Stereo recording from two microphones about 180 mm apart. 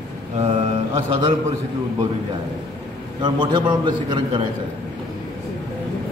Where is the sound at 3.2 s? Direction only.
25° right (ahead or behind).